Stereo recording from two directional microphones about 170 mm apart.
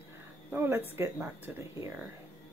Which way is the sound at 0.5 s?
15° right (ahead or behind).